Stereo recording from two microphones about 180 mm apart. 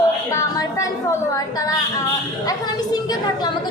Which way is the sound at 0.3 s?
20° left (ahead or behind).